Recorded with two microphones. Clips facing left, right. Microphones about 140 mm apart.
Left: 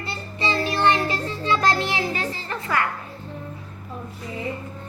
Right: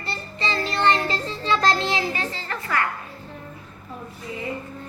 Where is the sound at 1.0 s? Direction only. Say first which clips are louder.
Left 1 dB; 10° left (ahead or behind).